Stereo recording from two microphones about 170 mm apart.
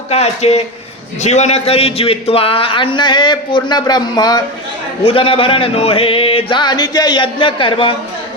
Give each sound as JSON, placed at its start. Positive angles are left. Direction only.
{"t": 0.1, "sound": "a man's voice", "side_deg": 40}